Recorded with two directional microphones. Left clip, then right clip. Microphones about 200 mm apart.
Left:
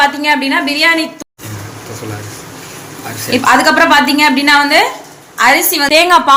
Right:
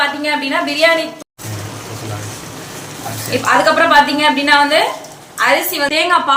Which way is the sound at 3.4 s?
40° left (ahead or behind).